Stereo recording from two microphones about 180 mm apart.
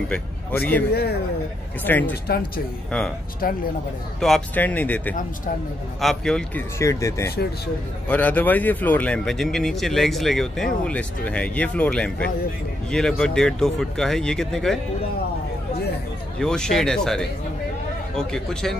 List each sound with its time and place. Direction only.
0.1 s speech: 10° left (ahead or behind)
1.9 s speech: 10° left (ahead or behind)
2.2 s speech: 60° left (ahead or behind)
4.2 s speech: 5° left (ahead or behind)
6.8 s speech: 15° left (ahead or behind)
16.3 s speech: 5° left (ahead or behind)